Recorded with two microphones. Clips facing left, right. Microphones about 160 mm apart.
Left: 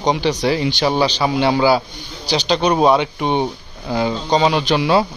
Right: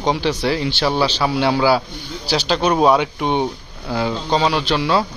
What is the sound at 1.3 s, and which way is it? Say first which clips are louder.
Speech: left 1 dB; centre (ahead or behind).